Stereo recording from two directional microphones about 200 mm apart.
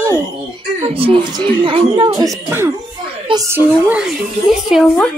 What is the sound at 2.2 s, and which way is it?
Child singing, 15° right (ahead or behind).